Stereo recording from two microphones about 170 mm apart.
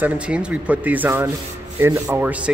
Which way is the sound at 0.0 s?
10° right (ahead or behind).